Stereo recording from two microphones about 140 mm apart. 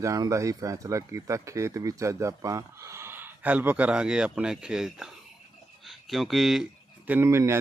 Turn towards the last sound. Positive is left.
turn(degrees=-20)  # may be behind; listen again after turning